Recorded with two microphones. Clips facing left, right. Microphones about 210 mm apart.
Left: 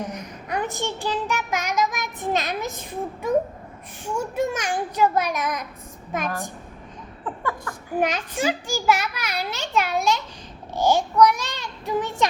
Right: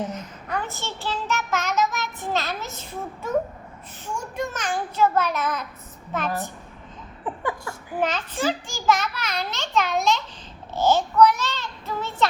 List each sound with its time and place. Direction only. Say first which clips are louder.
0.0 s child singing: right 1 dB; 15° left (ahead or behind)
4.0 s a child's voice: left 5 dB; 10° left (ahead or behind)
7.3 s a sound: right 1 dB; 15° right (ahead or behind)
8.0 s a child's voice: even; 15° left (ahead or behind)
10.8 s child singing: even; 15° left (ahead or behind)